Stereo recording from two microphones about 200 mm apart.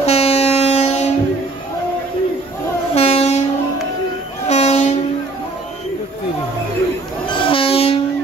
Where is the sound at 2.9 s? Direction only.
30° left (ahead or behind).